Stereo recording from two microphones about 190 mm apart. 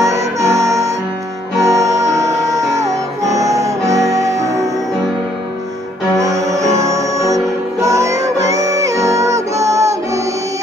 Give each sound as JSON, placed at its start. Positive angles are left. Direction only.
{"t": 0.0, "sound": "music", "side_deg": -15}
{"t": 6.1, "sound": "music", "side_deg": -15}